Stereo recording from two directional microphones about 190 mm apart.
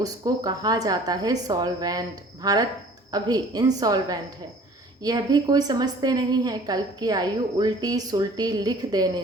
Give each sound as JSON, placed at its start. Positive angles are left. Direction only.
{"t": 0.0, "sound": "a woman's voice", "side_deg": -20}